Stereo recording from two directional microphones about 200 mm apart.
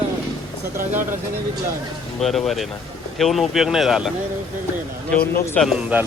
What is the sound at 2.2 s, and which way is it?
Speech, centre (ahead or behind).